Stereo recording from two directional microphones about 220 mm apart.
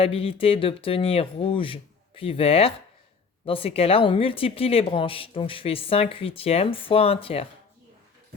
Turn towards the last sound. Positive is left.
turn(degrees=25)  # may be behind; listen again after turning